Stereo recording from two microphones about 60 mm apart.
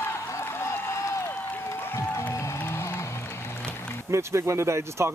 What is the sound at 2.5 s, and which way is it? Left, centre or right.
Music, left.